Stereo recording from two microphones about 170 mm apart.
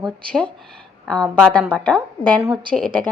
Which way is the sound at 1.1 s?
5° left (ahead or behind).